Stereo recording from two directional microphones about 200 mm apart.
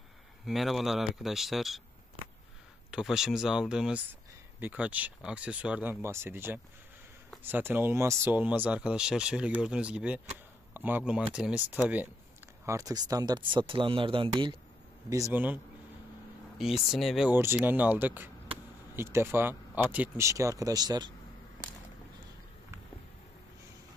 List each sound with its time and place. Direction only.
0.5 s speech: centre (ahead or behind)
2.9 s speech: 5° right (ahead or behind); by 21.1 s 20° right (ahead or behind)